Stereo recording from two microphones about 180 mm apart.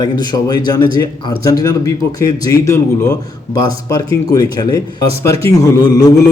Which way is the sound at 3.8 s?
20° left (ahead or behind).